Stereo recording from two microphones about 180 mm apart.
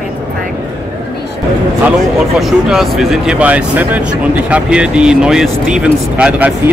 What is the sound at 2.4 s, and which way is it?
Speech, centre (ahead or behind).